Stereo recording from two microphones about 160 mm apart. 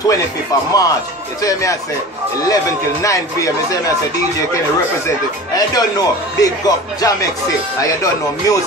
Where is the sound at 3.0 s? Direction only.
20° left (ahead or behind).